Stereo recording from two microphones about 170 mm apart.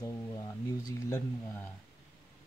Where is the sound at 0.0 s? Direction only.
20° left (ahead or behind).